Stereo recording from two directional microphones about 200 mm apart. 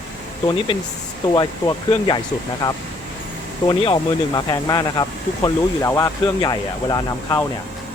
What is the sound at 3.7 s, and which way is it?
Speech, 20° left (ahead or behind).